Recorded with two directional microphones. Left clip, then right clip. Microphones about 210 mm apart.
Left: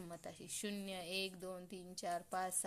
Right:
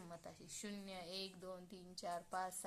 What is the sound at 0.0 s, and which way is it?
Speech, 35° left (ahead or behind).